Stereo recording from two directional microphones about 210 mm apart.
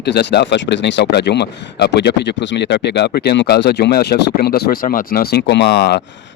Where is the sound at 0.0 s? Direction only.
55° left (ahead or behind).